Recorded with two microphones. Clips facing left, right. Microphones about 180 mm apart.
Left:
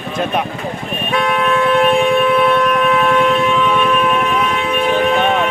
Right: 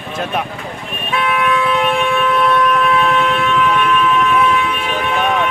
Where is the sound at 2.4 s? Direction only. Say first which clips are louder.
Left 1 dB; 25° left (ahead or behind).